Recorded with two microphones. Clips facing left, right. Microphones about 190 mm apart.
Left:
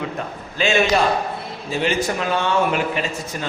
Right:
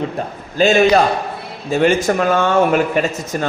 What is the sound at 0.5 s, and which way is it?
A man's voice, 40° right (ahead or behind).